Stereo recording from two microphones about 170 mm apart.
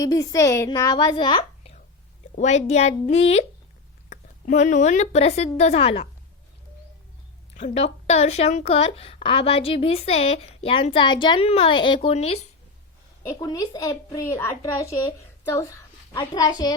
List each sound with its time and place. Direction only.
0.0 s a woman's voice: 20° left (ahead or behind); by 6.1 s 35° left (ahead or behind)
7.5 s a woman's voice: 40° left (ahead or behind)
13.4 s speech: 20° left (ahead or behind)